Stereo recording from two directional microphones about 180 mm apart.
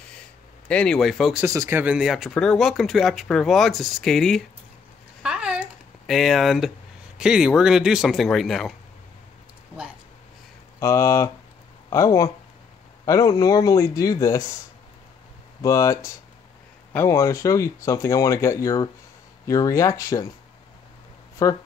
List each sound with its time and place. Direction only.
0.7 s speech: 5° left (ahead or behind)
1.4 s speech: 15° right (ahead or behind); by 4.4 s centre (ahead or behind)
5.2 s a sound: 5° right (ahead or behind)
7.2 s speech: 5° right (ahead or behind)
10.8 s speech: 15° left (ahead or behind)
15.6 s speech: 15° left (ahead or behind)
21.4 s speech: 20° left (ahead or behind)